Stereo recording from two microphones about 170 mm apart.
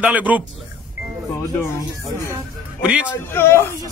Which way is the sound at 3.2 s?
15° left (ahead or behind).